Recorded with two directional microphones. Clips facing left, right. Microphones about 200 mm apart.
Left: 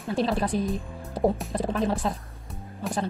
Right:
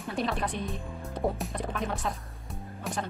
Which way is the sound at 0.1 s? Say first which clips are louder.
Left 6 dB; 30° left (ahead or behind).